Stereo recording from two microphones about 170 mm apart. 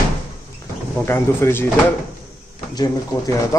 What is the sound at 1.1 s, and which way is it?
Speech, 15° left (ahead or behind).